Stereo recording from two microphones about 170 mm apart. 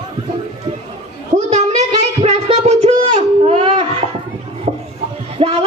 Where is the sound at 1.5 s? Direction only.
40° right (ahead or behind).